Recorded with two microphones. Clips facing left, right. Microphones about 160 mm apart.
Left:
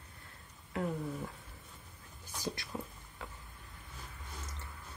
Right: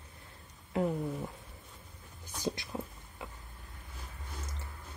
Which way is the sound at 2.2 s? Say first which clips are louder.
Right 4 dB; 20° right (ahead or behind).